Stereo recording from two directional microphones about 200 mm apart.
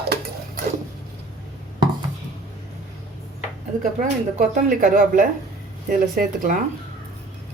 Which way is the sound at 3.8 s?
40° right (ahead or behind).